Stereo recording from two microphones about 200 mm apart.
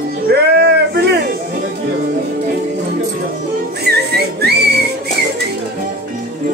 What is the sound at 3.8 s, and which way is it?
Music, 55° right (ahead or behind).